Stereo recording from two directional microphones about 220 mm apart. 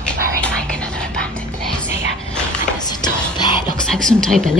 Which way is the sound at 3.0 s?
20° left (ahead or behind).